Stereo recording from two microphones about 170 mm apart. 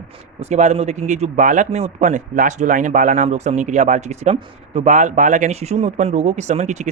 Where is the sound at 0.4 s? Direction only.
40° right (ahead or behind).